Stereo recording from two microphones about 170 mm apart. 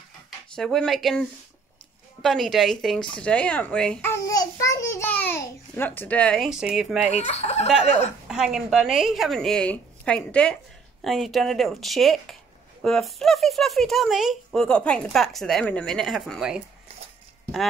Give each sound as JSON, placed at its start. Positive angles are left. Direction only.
{"t": 0.6, "sound": "speech", "side_deg": 0}
{"t": 2.2, "sound": "speech", "side_deg": 0}
{"t": 4.1, "sound": "a child's voice", "side_deg": 20}
{"t": 7.1, "sound": "speech", "side_deg": 40}
{"t": 8.3, "sound": "speech", "side_deg": -5}